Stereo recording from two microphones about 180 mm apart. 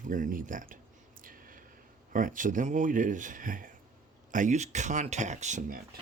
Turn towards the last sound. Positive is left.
turn(degrees=-45)  # may be behind; listen again after turning